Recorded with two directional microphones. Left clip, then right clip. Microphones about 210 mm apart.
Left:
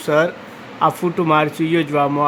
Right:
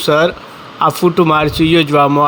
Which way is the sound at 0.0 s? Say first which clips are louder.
Right 5 dB; 15° right (ahead or behind).